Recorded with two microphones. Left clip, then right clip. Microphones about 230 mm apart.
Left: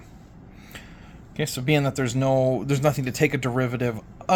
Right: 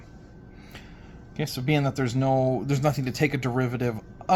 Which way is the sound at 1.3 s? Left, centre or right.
Centre.